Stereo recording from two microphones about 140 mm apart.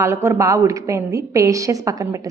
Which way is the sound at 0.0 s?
20° right (ahead or behind).